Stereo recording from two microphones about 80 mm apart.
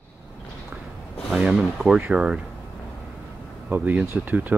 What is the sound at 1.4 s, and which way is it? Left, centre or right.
Speech, centre.